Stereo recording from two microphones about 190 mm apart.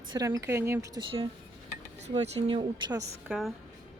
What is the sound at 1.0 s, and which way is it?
A woman's voice, 25° right (ahead or behind).